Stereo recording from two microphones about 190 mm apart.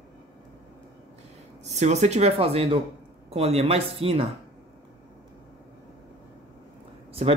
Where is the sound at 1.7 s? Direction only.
35° right (ahead or behind).